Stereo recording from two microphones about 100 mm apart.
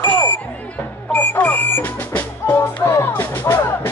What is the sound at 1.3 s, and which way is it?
Music, 15° left (ahead or behind).